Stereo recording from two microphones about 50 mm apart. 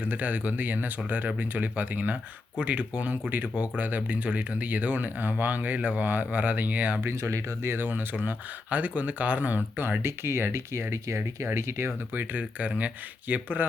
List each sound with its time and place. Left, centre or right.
0.0 s speech: right
7.0 s speech: right
7.7 s speech: right
8.1 s speech: right
10.0 s speech: right
12.1 s speech: right